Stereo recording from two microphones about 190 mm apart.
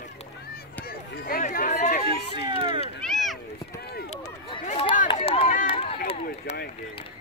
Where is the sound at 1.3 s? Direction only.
50° left (ahead or behind).